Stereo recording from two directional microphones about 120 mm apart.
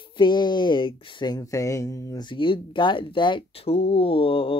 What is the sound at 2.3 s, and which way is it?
Speech, 40° left (ahead or behind).